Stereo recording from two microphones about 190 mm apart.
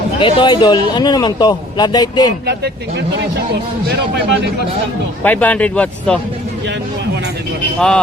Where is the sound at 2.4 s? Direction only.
60° right (ahead or behind).